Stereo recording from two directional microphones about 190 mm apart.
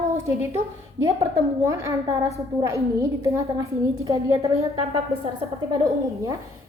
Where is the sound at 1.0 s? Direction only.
15° right (ahead or behind).